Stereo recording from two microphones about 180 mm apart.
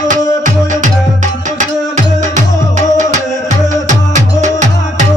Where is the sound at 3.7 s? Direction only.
45° right (ahead or behind).